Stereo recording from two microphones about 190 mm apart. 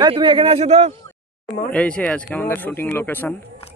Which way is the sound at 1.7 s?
5° left (ahead or behind).